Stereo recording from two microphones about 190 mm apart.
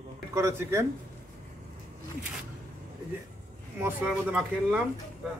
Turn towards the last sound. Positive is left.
turn(degrees=-5)  # may be behind; listen again after turning